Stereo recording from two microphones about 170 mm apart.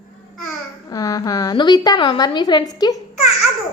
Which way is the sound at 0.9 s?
20° left (ahead or behind).